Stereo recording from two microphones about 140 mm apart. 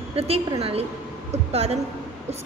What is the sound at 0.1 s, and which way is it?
Speech, 45° right (ahead or behind).